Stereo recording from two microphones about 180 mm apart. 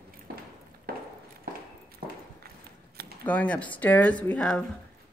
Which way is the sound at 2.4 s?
60° right (ahead or behind).